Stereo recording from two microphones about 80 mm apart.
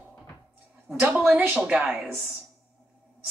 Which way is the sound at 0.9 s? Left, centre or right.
Right.